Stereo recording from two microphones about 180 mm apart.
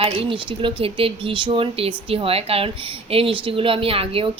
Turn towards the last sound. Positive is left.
turn(degrees=-30)  # may be behind; listen again after turning